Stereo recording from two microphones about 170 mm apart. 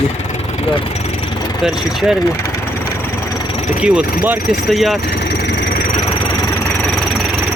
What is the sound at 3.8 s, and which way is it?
Speech, 10° right (ahead or behind).